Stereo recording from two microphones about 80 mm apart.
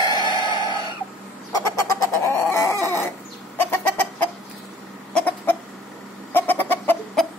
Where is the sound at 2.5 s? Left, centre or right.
Left.